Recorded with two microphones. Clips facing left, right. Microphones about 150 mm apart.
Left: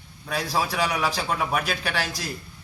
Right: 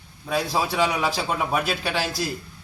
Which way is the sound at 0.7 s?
25° right (ahead or behind).